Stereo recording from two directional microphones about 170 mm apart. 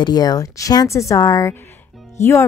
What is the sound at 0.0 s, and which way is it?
A woman's voice, 25° left (ahead or behind).